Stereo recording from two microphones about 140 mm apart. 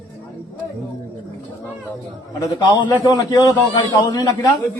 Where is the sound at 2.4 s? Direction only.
25° left (ahead or behind).